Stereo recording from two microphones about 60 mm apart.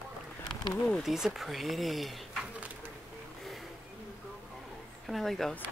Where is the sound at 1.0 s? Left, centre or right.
Centre.